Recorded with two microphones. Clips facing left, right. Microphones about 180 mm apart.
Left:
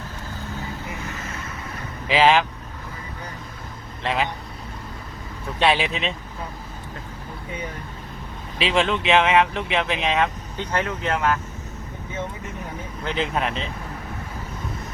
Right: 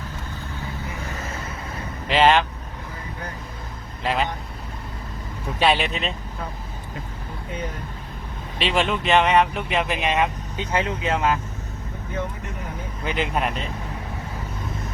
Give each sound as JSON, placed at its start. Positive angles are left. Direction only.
{"t": 2.0, "sound": "speech", "side_deg": 0}
{"t": 4.0, "sound": "speech", "side_deg": 0}
{"t": 5.5, "sound": "speech", "side_deg": 0}
{"t": 8.5, "sound": "speech", "side_deg": 0}
{"t": 10.7, "sound": "speech", "side_deg": -15}
{"t": 13.1, "sound": "speech", "side_deg": 0}